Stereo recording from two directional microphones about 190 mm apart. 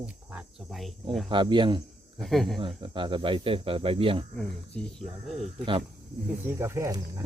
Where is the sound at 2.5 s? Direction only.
25° right (ahead or behind).